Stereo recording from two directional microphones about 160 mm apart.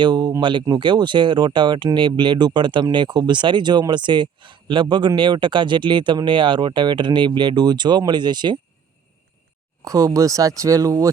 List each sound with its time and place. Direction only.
0.0 s speech: 25° right (ahead or behind)
9.8 s speech: 20° right (ahead or behind)